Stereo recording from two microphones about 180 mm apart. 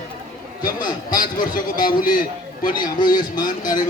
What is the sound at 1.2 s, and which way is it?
Speech, 50° left (ahead or behind).